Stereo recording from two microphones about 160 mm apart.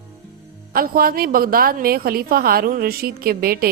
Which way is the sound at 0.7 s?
65° right (ahead or behind).